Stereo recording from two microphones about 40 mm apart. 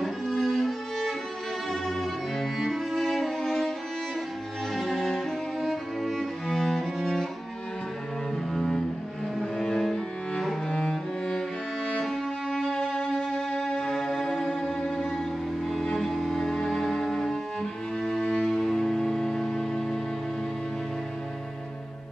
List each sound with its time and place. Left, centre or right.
0.0 s music: centre
4.7 s cello: centre
5.6 s music: centre
8.5 s cello: centre
10.7 s music: centre
12.0 s music: centre
18.2 s music: left
18.5 s music: centre